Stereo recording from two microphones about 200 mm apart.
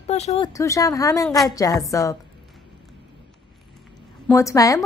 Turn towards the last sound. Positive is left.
turn(degrees=15)  # may be behind; listen again after turning